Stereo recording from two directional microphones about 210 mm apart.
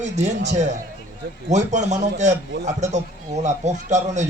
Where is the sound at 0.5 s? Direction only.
35° right (ahead or behind).